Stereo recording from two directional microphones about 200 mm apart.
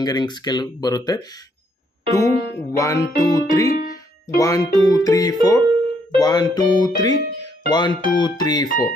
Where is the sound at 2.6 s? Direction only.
15° left (ahead or behind).